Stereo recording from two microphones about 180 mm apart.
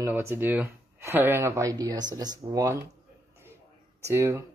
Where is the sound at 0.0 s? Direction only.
15° right (ahead or behind).